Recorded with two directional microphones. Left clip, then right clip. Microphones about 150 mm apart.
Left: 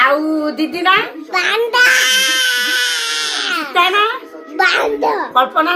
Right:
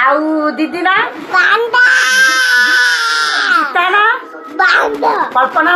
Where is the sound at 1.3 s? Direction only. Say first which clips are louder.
Right 5 dB; 15° left (ahead or behind).